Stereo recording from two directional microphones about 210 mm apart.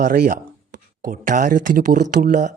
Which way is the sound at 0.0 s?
45° right (ahead or behind).